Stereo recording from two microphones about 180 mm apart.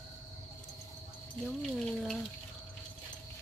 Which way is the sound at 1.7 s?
Centre (ahead or behind).